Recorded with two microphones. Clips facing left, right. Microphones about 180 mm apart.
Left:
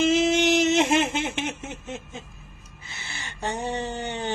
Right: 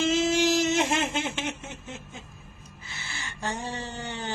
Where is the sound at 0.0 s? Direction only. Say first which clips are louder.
Left 3 dB; 15° left (ahead or behind).